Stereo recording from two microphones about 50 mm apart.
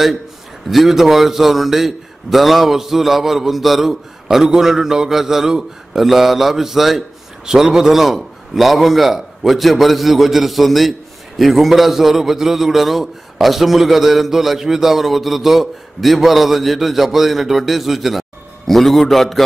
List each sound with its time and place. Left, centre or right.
0.7 s a man's voice: centre